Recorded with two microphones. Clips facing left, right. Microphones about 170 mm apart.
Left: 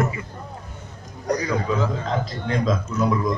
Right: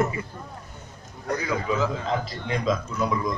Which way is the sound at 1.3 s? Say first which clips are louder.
Left 5 dB; 40° left (ahead or behind).